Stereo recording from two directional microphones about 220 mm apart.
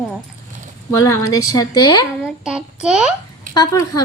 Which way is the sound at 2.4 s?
5° right (ahead or behind).